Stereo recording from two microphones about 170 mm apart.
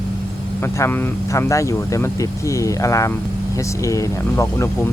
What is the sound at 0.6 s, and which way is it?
Speech, 15° left (ahead or behind).